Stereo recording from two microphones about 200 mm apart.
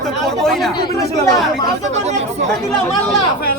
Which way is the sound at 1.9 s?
35° right (ahead or behind).